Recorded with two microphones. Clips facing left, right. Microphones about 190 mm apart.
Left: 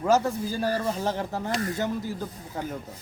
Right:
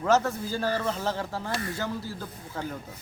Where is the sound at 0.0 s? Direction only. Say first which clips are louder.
Left 1 dB; 15° left (ahead or behind).